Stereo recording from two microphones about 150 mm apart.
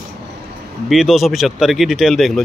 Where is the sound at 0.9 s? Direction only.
Centre (ahead or behind).